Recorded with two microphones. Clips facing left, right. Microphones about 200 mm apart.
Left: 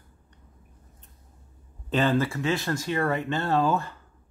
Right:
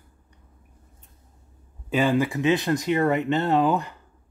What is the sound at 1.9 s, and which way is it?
Speech, 10° right (ahead or behind).